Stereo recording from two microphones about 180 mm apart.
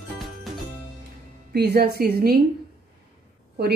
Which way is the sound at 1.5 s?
60° right (ahead or behind).